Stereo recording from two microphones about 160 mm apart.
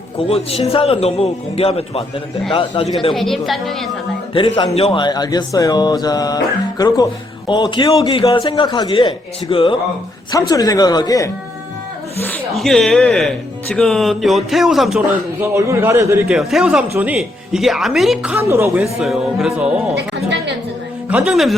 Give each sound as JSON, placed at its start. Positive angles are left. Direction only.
{"t": 0.3, "sound": "a man's voice", "side_deg": 40}
{"t": 3.1, "sound": "speech", "side_deg": 0}
{"t": 4.4, "sound": "speech", "side_deg": 30}
{"t": 12.5, "sound": "speech", "side_deg": 0}
{"t": 15.4, "sound": "speech", "side_deg": -20}
{"t": 16.3, "sound": "speech", "side_deg": 0}
{"t": 18.3, "sound": "speech", "side_deg": -15}
{"t": 18.9, "sound": "speech", "side_deg": 0}
{"t": 21.1, "sound": "speech", "side_deg": -5}